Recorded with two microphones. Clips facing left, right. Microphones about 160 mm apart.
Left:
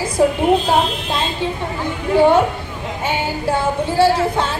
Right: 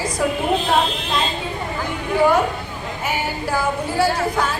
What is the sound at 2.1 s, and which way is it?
Music, 25° left (ahead or behind).